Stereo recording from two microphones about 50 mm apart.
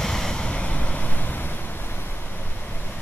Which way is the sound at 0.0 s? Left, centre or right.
Centre.